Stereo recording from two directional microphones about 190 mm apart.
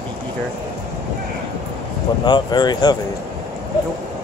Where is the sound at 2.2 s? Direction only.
20° left (ahead or behind).